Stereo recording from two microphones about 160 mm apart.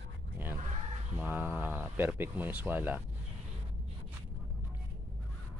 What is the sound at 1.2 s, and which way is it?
Speech, 10° right (ahead or behind).